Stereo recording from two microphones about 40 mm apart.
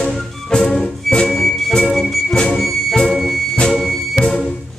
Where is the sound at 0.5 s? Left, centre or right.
Centre.